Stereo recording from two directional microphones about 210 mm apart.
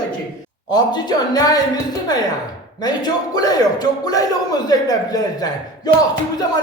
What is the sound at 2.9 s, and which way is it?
A man's voice, 20° left (ahead or behind).